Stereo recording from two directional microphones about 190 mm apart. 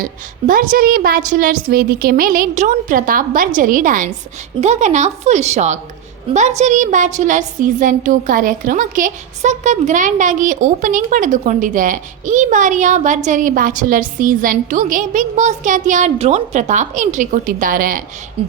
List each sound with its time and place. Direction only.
0.0 s a woman's voice: 45° right (ahead or behind)
18.4 s speech: 30° right (ahead or behind)